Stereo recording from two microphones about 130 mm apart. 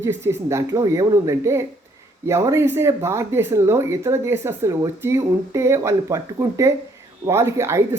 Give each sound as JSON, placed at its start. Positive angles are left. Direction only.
{"t": 0.0, "sound": "speech", "side_deg": -20}